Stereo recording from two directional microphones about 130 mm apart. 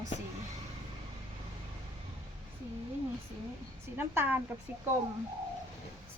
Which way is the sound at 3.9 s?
15° right (ahead or behind).